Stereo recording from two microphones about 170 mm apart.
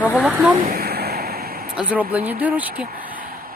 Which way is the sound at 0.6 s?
60° right (ahead or behind).